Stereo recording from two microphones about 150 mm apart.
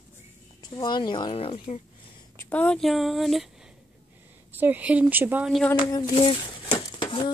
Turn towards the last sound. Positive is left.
turn(degrees=35)  # may be behind; listen again after turning